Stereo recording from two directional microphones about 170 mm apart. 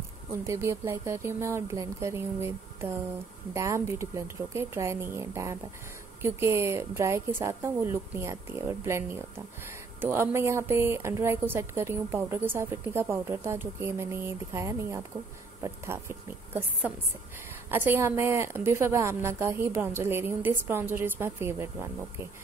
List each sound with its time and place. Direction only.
0.5 s speech: 15° right (ahead or behind)